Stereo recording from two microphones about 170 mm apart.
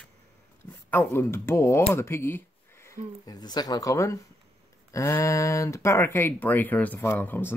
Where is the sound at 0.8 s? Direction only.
10° left (ahead or behind).